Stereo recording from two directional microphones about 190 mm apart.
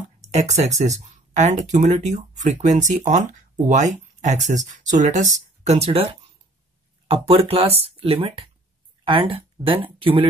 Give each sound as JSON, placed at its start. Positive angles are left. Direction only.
{"t": 0.2, "sound": "speech", "side_deg": -35}
{"t": 7.1, "sound": "speech", "side_deg": -30}